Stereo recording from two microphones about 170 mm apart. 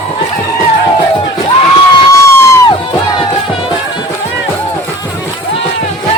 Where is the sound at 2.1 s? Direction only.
20° left (ahead or behind).